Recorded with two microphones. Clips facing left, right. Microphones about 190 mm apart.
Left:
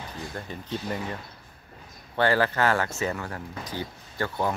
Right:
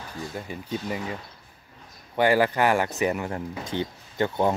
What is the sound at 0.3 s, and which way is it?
Speech, 10° right (ahead or behind).